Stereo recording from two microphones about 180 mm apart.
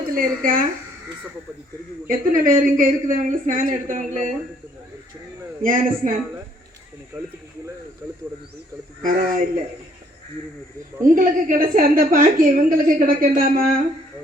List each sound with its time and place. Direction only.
0.1 s a woman's voice: 50° right (ahead or behind)
2.0 s a woman's voice: 50° right (ahead or behind)
5.6 s a woman's voice: 50° right (ahead or behind)
9.0 s a woman's voice: 50° right (ahead or behind)
11.0 s a woman's voice: 50° right (ahead or behind)